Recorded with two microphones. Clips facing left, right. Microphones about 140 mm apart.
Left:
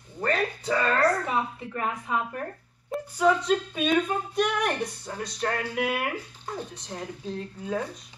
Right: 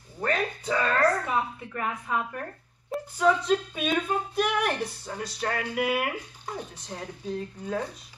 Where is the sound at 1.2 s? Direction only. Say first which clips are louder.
Even; 20° left (ahead or behind).